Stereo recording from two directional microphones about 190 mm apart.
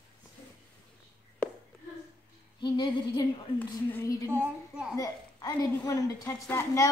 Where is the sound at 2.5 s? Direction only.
25° left (ahead or behind).